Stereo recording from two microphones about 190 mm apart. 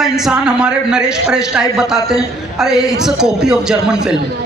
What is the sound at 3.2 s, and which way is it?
Speech, 5° right (ahead or behind).